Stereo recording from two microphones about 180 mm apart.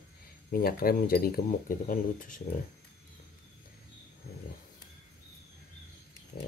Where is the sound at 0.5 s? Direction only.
55° left (ahead or behind).